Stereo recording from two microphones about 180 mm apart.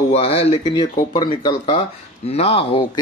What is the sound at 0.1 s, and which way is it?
Speech, 35° left (ahead or behind).